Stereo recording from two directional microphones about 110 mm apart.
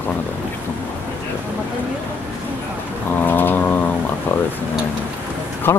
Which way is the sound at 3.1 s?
15° left (ahead or behind).